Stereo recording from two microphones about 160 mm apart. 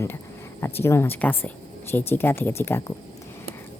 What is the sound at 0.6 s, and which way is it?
Speech, 15° left (ahead or behind).